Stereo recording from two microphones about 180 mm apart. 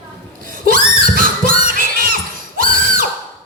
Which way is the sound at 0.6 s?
50° right (ahead or behind).